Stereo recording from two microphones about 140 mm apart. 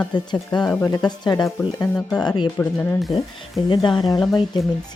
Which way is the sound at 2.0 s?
Centre (ahead or behind).